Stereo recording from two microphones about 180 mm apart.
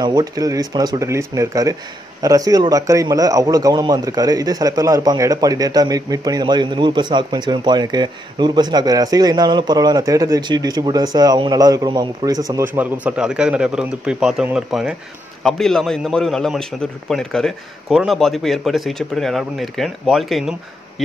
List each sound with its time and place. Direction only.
0.0 s a man's voice: 20° right (ahead or behind); by 20.5 s centre (ahead or behind)